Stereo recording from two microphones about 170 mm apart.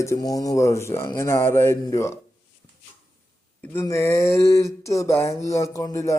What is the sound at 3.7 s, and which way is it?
A man's voice, 15° left (ahead or behind).